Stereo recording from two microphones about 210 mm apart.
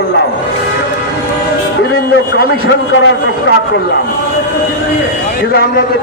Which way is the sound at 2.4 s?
60° left (ahead or behind).